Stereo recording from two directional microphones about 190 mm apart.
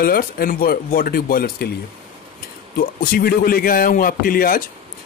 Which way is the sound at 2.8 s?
50° left (ahead or behind).